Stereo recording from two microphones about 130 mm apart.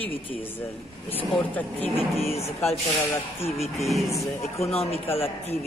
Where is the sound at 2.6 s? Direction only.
20° left (ahead or behind).